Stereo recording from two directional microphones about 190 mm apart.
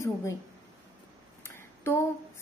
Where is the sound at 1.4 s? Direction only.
15° left (ahead or behind).